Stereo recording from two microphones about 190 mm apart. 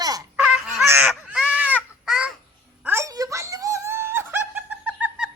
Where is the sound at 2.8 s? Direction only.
15° right (ahead or behind).